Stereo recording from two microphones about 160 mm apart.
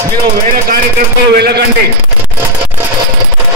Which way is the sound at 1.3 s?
90° right.